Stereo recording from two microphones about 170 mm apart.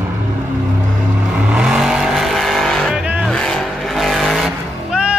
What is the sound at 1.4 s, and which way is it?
Vehicle, 5° right (ahead or behind).